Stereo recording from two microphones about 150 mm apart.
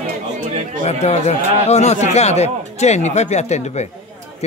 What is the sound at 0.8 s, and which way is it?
Speech, 45° left (ahead or behind).